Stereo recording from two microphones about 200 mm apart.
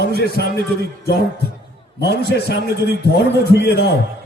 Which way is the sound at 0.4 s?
55° left (ahead or behind).